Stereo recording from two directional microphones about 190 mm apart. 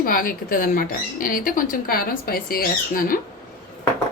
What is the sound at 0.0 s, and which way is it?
Speech, 45° left (ahead or behind).